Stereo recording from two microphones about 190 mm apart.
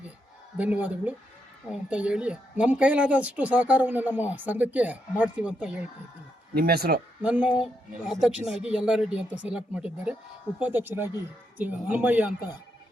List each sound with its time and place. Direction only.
0.5 s a woman's voice: 10° right (ahead or behind)
6.5 s speech: 55° right (ahead or behind)
7.2 s a woman's voice: 5° right (ahead or behind)